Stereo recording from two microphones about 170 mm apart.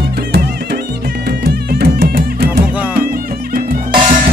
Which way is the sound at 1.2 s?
65° right (ahead or behind).